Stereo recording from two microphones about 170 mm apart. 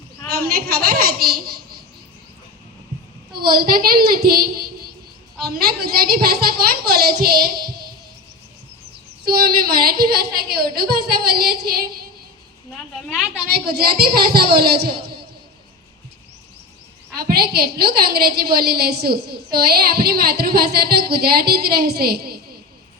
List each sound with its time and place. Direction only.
0.3 s a woman's voice: 65° right (ahead or behind)
3.3 s a woman's voice: 60° right (ahead or behind)
9.2 s a woman's voice: 65° right (ahead or behind)
12.7 s a woman's voice: centre (ahead or behind)
13.5 s a woman's voice: 65° right (ahead or behind)
17.2 s a woman's voice: 65° right (ahead or behind)